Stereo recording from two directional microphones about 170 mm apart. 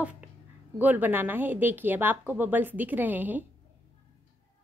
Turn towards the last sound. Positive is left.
turn(degrees=-10)  # may be behind; listen again after turning